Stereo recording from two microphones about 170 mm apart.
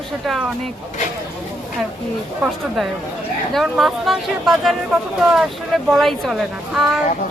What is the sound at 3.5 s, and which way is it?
Speech, centre (ahead or behind).